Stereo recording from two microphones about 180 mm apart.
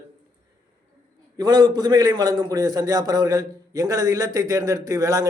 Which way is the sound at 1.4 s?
20° right (ahead or behind).